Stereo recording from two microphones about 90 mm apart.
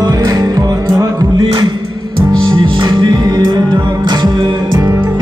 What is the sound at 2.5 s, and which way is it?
Music, 60° right (ahead or behind).